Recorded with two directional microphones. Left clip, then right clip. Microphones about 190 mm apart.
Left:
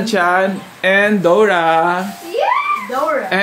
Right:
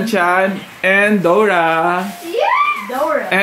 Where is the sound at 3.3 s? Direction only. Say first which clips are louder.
Right 2 dB; 5° right (ahead or behind).